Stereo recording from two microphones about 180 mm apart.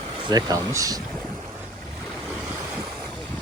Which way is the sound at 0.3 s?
20° right (ahead or behind).